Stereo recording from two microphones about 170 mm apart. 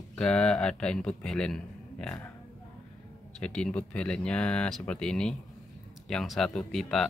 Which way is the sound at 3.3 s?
5° left (ahead or behind).